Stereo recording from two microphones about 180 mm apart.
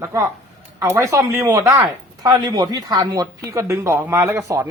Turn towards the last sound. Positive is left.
turn(degrees=-15)  # may be behind; listen again after turning